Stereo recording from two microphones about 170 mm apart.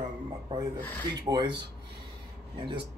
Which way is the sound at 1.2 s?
25° right (ahead or behind).